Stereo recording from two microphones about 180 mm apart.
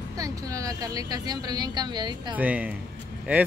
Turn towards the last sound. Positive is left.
turn(degrees=-10)  # may be behind; listen again after turning